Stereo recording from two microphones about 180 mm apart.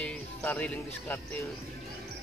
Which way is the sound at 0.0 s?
5° left (ahead or behind).